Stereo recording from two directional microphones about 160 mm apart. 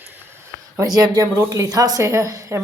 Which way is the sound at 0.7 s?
20° right (ahead or behind).